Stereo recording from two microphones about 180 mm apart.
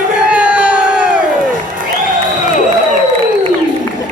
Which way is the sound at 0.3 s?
5° right (ahead or behind).